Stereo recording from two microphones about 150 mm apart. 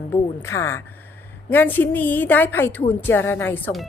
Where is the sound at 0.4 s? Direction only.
20° left (ahead or behind).